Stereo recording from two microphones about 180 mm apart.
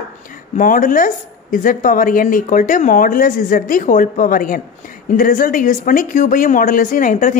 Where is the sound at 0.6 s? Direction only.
45° left (ahead or behind).